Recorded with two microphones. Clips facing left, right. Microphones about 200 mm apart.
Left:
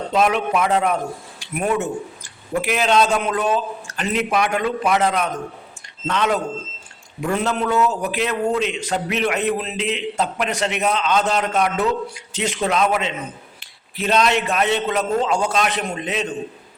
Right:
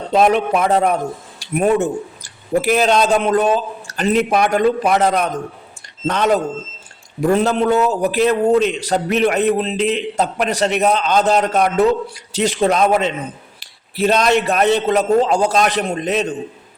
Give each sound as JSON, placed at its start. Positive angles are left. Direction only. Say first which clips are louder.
{"t": 0.1, "sound": "a man's voice", "louder": "right 5 dB", "side_deg": -35}